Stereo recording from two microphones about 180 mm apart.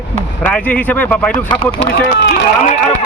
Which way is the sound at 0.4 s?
5° left (ahead or behind).